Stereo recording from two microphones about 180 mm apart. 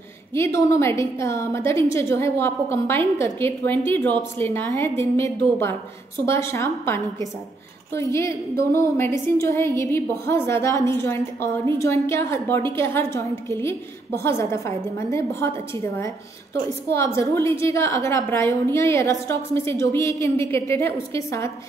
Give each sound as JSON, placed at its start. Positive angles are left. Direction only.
{"t": 0.3, "sound": "a woman's voice", "side_deg": 15}
{"t": 16.9, "sound": "a woman's voice", "side_deg": 15}